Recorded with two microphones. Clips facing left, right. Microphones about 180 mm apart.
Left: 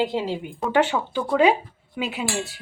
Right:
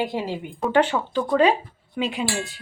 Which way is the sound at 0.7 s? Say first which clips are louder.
Right 1 dB; 10° left (ahead or behind).